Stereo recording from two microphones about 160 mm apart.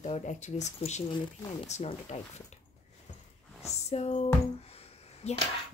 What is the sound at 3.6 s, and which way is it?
Speech, 40° left (ahead or behind).